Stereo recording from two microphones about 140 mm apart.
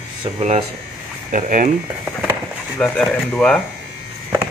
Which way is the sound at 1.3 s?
70° right (ahead or behind).